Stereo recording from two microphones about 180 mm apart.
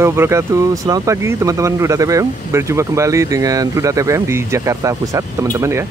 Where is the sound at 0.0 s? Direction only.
15° right (ahead or behind).